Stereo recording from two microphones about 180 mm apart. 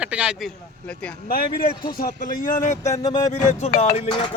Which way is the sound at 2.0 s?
50° left (ahead or behind).